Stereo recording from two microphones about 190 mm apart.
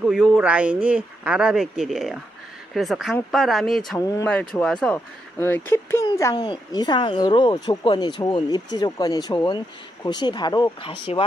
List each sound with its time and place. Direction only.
0.0 s a man's voice: centre (ahead or behind)
4.1 s speech: 10° left (ahead or behind); by 11.2 s 30° left (ahead or behind)